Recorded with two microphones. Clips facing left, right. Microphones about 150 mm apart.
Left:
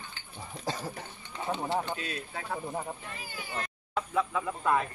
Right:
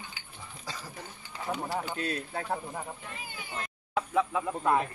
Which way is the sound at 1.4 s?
25° left (ahead or behind).